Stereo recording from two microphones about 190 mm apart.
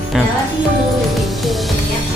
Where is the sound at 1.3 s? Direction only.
Centre (ahead or behind).